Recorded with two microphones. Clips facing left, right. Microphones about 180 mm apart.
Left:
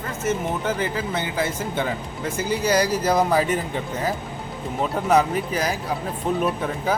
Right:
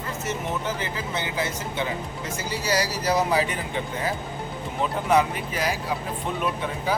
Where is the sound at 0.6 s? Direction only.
50° left (ahead or behind).